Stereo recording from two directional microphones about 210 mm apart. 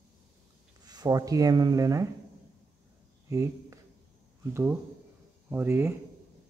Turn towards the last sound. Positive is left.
turn(degrees=-10)  # may be behind; listen again after turning